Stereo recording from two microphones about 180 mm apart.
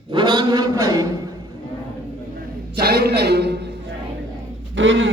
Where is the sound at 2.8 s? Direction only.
60° right (ahead or behind).